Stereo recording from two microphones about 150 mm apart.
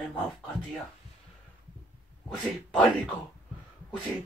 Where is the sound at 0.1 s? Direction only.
5° left (ahead or behind).